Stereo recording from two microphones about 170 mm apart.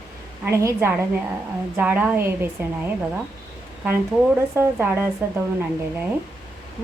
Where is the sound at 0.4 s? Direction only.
15° right (ahead or behind).